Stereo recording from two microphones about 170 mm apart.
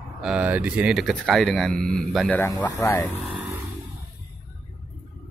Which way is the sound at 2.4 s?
20° left (ahead or behind).